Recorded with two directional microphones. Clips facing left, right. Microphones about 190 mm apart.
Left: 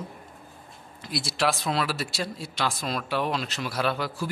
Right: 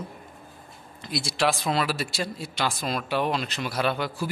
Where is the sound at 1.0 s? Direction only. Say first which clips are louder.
Right 1 dB; centre (ahead or behind).